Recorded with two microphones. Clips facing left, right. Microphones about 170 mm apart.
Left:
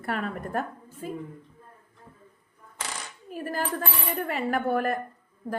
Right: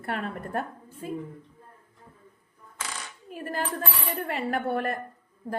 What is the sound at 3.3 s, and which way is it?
Cutlery, 30° left (ahead or behind).